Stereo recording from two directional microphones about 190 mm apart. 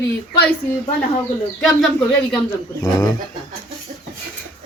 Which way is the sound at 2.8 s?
15° left (ahead or behind).